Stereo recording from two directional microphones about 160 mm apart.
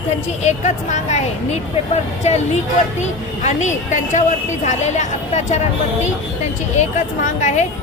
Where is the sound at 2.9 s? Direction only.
45° left (ahead or behind).